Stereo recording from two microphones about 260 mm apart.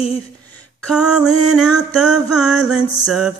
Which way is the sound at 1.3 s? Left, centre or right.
Right.